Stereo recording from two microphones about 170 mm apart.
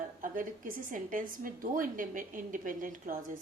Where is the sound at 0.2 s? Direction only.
50° right (ahead or behind).